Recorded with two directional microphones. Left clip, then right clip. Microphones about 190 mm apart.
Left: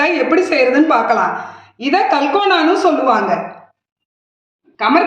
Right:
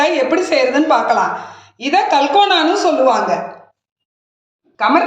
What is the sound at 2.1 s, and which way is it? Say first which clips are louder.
A woman's voice: right 2 dB; 5° right (ahead or behind).